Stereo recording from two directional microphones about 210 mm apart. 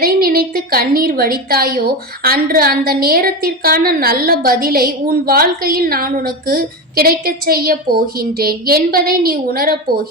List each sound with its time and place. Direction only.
0.0 s a woman's voice: 45° right (ahead or behind)